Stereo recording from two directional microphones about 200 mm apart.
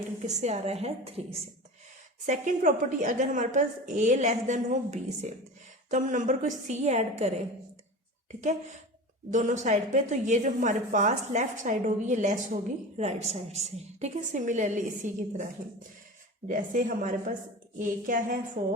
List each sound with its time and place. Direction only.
0.3 s a woman's voice: 35° right (ahead or behind)
2.2 s a woman's voice: 40° right (ahead or behind)
16.5 s a woman's voice: 40° right (ahead or behind)